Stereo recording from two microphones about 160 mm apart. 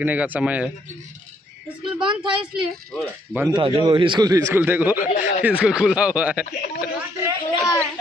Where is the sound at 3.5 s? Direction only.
30° right (ahead or behind).